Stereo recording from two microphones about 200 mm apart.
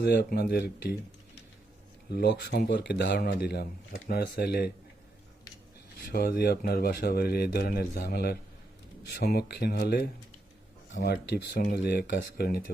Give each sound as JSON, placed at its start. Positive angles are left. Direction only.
{"t": 0.0, "sound": "speech", "side_deg": 55}
{"t": 2.0, "sound": "speech", "side_deg": 55}
{"t": 6.1, "sound": "speech", "side_deg": 50}